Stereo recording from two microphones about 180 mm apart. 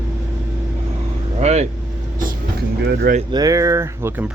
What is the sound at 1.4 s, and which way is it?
Vehicle, 40° right (ahead or behind).